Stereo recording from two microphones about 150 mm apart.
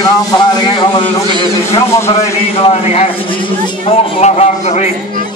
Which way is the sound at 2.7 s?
40° left (ahead or behind).